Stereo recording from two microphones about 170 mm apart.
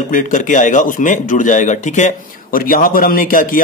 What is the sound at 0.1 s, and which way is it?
Speech, 50° left (ahead or behind).